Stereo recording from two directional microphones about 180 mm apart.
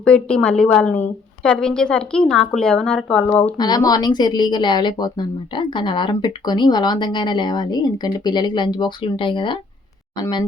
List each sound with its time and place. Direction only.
0.0 s a woman's voice: 5° left (ahead or behind)
3.6 s a woman's voice: 20° left (ahead or behind)